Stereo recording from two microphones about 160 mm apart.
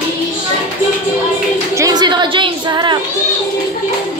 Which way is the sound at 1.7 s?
25° right (ahead or behind).